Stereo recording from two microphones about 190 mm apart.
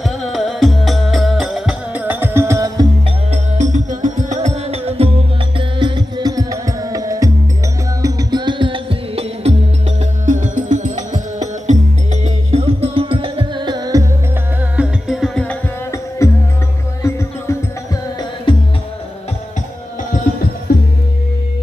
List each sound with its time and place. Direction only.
0.0 s music: centre (ahead or behind); by 2.9 s 15° right (ahead or behind)
3.3 s music: 40° right (ahead or behind); by 14.0 s 20° right (ahead or behind)
14.8 s music: centre (ahead or behind); by 17.6 s 15° left (ahead or behind)
18.5 s music: 25° left (ahead or behind)